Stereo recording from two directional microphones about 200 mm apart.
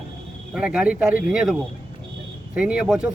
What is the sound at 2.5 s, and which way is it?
Speech, 5° right (ahead or behind).